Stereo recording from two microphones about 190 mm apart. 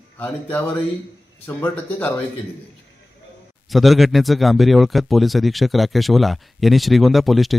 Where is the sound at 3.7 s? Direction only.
Centre (ahead or behind).